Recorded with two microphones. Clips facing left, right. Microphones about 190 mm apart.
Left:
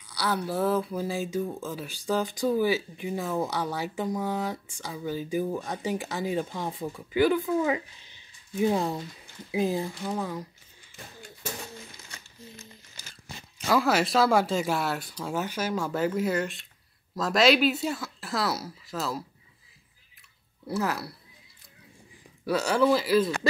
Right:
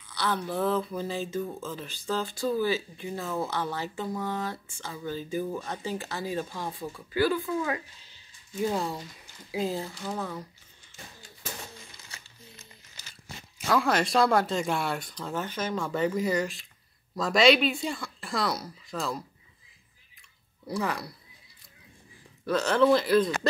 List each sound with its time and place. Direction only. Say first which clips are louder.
0.1 s speech: left 1 dB; 10° left (ahead or behind)
13.7 s speech: left 1 dB; 5° left (ahead or behind)
20.6 s speech: left 2 dB; 5° left (ahead or behind)
22.4 s speech: right 1 dB; 10° left (ahead or behind)